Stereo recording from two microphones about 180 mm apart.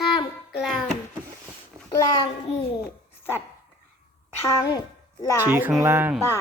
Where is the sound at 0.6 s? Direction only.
Centre (ahead or behind).